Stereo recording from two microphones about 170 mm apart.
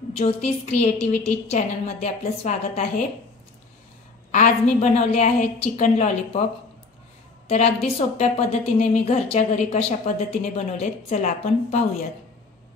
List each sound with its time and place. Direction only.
0.1 s a woman's voice: 40° left (ahead or behind)
4.3 s a woman's voice: 45° left (ahead or behind)
7.4 s a woman's voice: 40° left (ahead or behind)